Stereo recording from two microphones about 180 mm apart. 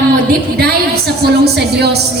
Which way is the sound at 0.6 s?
60° right (ahead or behind).